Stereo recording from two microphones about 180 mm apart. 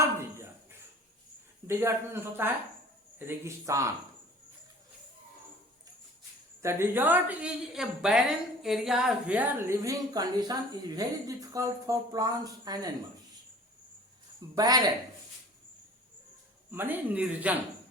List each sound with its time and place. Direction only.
0.0 s a sound: 15° right (ahead or behind)
1.6 s a woman's voice: 15° right (ahead or behind)
6.6 s a woman's voice: 15° right (ahead or behind)
14.5 s a woman's voice: 20° right (ahead or behind)
16.7 s a woman's voice: 10° right (ahead or behind)